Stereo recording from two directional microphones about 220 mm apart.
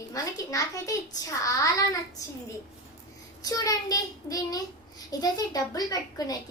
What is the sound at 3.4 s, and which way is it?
A woman's voice, 15° left (ahead or behind).